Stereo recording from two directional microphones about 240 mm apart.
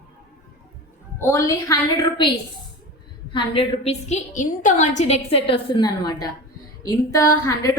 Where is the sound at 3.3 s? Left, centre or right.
Left.